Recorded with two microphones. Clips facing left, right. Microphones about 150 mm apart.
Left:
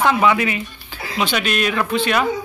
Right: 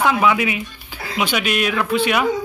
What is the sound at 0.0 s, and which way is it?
Speech, 5° right (ahead or behind).